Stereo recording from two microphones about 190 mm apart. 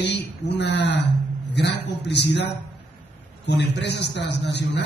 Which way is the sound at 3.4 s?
65° left (ahead or behind).